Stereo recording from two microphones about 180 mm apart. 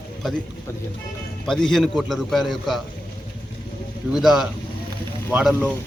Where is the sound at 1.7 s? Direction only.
Centre (ahead or behind).